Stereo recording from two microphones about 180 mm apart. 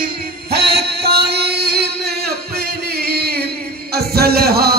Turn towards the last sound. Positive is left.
turn(degrees=-60)  # may be behind; listen again after turning